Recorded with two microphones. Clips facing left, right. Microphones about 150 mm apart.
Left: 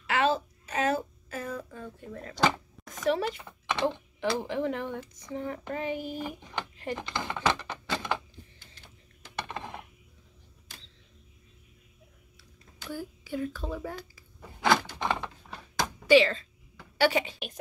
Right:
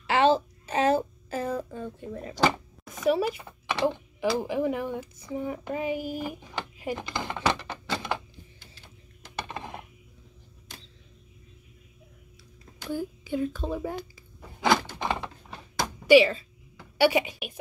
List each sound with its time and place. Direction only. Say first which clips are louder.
0.0 s a child's voice: right 5 dB; 30° right (ahead or behind)
2.3 s speech: right 2 dB; 5° right (ahead or behind)
9.3 s typing: right 1 dB; 5° right (ahead or behind)
12.9 s a child's voice: right 5 dB; 20° right (ahead or behind)
14.7 s a sound: right 1 dB; 10° right (ahead or behind)
17.0 s a woman's voice: right 3 dB; 10° right (ahead or behind)